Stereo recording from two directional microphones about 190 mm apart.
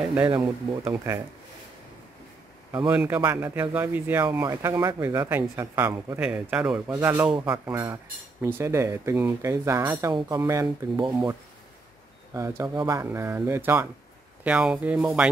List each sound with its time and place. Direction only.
0.0 s speech: 10° right (ahead or behind)
0.3 s speech: 20° right (ahead or behind)
2.9 s speech: 10° right (ahead or behind)
12.4 s speech: 15° right (ahead or behind)